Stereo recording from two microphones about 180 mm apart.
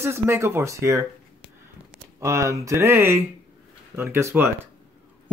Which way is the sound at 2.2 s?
15° right (ahead or behind).